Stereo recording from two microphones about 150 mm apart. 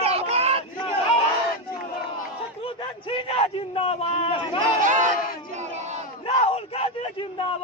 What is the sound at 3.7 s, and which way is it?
Speech, 40° left (ahead or behind).